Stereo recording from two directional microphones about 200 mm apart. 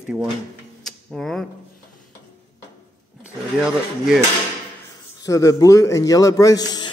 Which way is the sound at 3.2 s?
5° right (ahead or behind).